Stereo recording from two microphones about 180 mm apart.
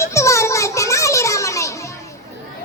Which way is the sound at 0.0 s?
15° left (ahead or behind).